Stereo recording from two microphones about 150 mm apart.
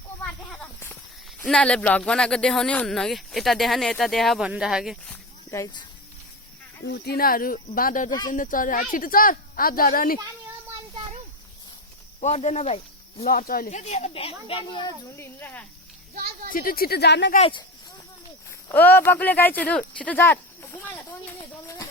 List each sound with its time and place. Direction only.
0.2 s a sound: 10° left (ahead or behind)
1.4 s speech: 5° left (ahead or behind)
5.5 s speech: 20° left (ahead or behind)
6.9 s speech: 90° left; by 10.2 s 70° left (ahead or behind)
12.2 s speech: 45° left (ahead or behind)
13.2 s speech: 75° left (ahead or behind); by 14.9 s 30° left (ahead or behind)
15.1 s speech: 15° left (ahead or behind)
16.1 s a woman's voice: 90° right
16.5 s speech: 70° left (ahead or behind); by 17.4 s 85° left
17.4 s a sound: 30° left (ahead or behind)
18.7 s speech: 15° left (ahead or behind)